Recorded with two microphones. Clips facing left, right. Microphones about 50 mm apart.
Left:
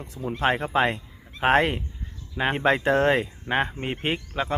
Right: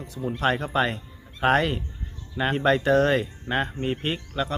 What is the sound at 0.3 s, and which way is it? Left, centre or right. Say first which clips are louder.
Speech: left 1 dB; left.